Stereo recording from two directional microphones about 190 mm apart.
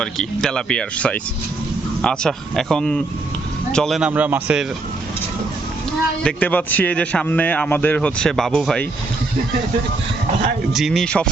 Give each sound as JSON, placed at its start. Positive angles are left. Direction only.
{"t": 0.0, "sound": "speech", "side_deg": 5}
{"t": 6.2, "sound": "a man's voice", "side_deg": 10}
{"t": 10.7, "sound": "speech", "side_deg": 0}